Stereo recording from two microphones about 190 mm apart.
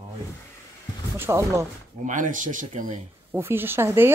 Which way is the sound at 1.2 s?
15° right (ahead or behind).